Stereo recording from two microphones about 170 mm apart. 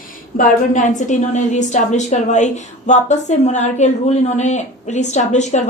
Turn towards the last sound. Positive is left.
turn(degrees=45)  # may be behind; listen again after turning